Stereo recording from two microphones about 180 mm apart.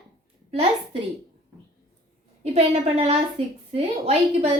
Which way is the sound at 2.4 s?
35° right (ahead or behind).